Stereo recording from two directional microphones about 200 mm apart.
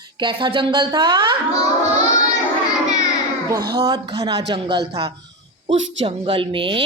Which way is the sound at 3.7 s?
20° right (ahead or behind).